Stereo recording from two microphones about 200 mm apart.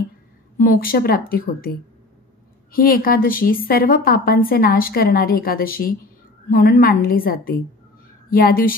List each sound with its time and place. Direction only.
0.6 s a woman's voice: 45° left (ahead or behind)